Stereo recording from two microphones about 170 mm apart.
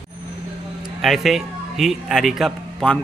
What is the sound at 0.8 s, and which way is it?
Speech, centre (ahead or behind).